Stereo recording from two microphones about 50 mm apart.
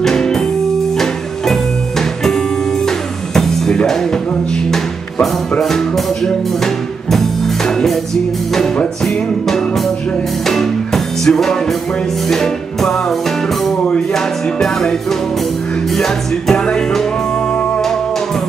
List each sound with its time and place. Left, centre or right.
0.0 s music: centre
9.0 s music: centre
14.1 s music: centre